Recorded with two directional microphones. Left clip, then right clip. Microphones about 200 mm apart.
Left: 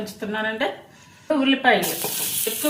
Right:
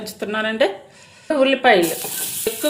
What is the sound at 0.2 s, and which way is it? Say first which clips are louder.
Stir: right 6 dB; 50° right (ahead or behind).